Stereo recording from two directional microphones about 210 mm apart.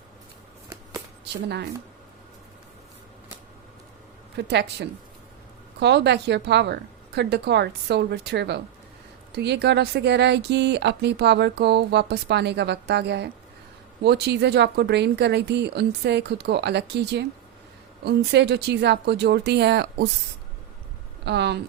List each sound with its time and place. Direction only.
4.4 s a woman's voice: 55° right (ahead or behind)
21.2 s speech: 55° right (ahead or behind)